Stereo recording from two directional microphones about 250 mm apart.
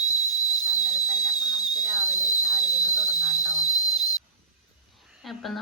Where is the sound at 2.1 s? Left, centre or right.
Centre.